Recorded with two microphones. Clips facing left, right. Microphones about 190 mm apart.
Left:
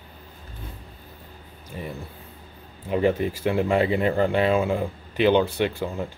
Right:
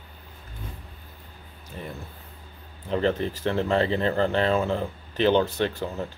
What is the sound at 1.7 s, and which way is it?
Speech, 10° left (ahead or behind).